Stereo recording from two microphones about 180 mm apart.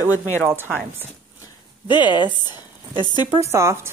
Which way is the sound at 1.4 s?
25° left (ahead or behind).